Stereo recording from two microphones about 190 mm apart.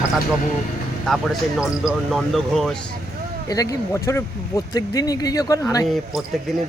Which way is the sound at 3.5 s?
15° left (ahead or behind).